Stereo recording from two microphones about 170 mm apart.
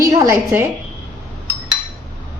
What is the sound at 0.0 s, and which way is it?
Speech, 20° right (ahead or behind).